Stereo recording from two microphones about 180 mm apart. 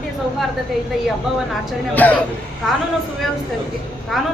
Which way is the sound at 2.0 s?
10° left (ahead or behind).